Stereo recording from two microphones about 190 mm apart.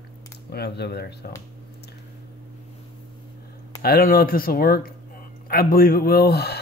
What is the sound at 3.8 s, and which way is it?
Speech, 50° left (ahead or behind).